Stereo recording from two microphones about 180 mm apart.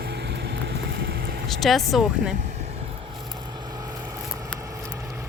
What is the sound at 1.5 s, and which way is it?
Speech, centre (ahead or behind).